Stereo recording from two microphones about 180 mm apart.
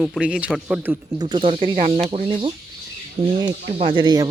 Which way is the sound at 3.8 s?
30° right (ahead or behind).